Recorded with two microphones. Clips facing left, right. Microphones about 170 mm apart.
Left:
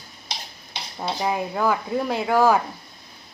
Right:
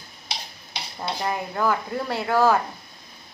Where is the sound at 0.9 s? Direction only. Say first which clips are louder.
Left 3 dB; 10° left (ahead or behind).